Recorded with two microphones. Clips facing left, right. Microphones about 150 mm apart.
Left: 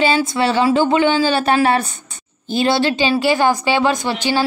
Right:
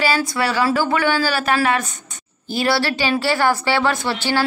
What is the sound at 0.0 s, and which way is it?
A woman's voice, 25° left (ahead or behind).